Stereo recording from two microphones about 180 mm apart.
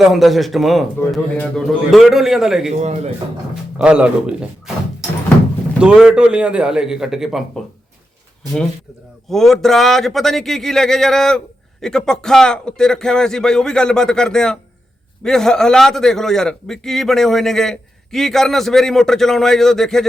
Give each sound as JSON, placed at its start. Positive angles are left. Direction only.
{"t": 0.0, "sound": "speech", "side_deg": 0}
{"t": 2.8, "sound": "speech", "side_deg": -40}
{"t": 3.5, "sound": "speech", "side_deg": -5}
{"t": 9.3, "sound": "speech", "side_deg": 0}